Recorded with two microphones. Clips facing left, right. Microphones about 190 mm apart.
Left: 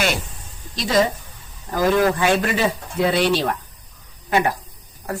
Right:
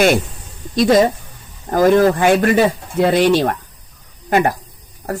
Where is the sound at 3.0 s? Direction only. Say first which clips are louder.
Right 5 dB; 45° right (ahead or behind).